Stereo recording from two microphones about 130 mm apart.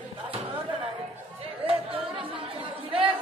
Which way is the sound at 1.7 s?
45° right (ahead or behind).